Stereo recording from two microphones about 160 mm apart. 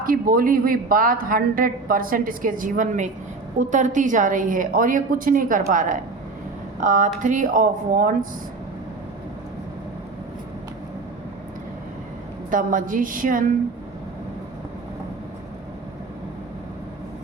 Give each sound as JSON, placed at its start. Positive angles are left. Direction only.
{"t": 0.0, "sound": "a woman's voice", "side_deg": -60}
{"t": 12.5, "sound": "a woman's voice", "side_deg": -55}